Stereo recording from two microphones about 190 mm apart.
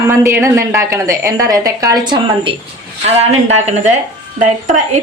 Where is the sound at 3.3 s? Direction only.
35° right (ahead or behind).